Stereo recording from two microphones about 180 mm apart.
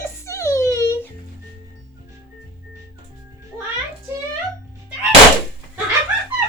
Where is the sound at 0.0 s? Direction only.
15° left (ahead or behind).